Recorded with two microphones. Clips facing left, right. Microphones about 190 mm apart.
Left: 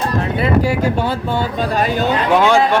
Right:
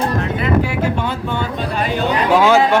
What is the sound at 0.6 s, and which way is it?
Speech, 40° left (ahead or behind).